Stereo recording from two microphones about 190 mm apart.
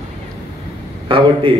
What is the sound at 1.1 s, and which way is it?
Speech, 25° right (ahead or behind).